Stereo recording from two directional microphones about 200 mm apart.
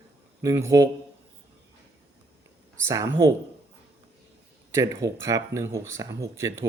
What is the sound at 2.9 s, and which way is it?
Speech, 15° right (ahead or behind).